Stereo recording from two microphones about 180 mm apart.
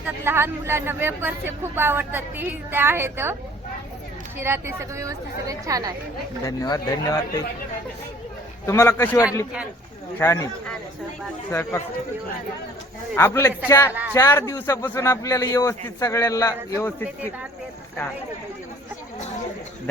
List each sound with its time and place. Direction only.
0.0 s speech: 15° right (ahead or behind)
4.4 s speech: 15° right (ahead or behind)
6.4 s speech: 20° left (ahead or behind)
8.6 s a man's voice: 15° left (ahead or behind)
13.1 s a man's voice: 15° left (ahead or behind)